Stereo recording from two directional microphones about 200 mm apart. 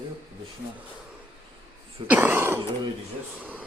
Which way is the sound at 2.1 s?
10° right (ahead or behind).